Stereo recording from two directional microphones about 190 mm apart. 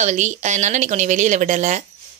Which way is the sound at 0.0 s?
40° right (ahead or behind).